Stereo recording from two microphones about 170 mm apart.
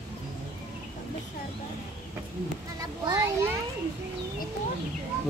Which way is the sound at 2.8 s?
20° right (ahead or behind).